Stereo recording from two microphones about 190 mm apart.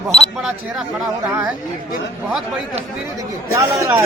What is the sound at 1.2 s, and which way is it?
Chatter, 10° right (ahead or behind).